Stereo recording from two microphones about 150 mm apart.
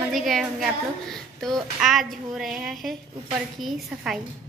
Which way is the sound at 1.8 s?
Centre (ahead or behind).